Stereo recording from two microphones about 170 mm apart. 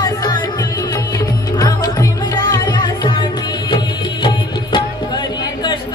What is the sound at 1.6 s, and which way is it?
Music, 20° left (ahead or behind).